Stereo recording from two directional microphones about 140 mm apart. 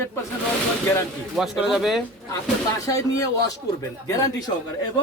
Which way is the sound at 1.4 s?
Centre (ahead or behind).